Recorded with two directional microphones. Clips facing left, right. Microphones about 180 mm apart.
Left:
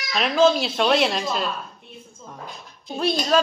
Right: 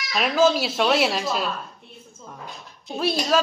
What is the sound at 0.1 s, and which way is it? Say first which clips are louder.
A woman's voice: left 1 dB; 5° right (ahead or behind).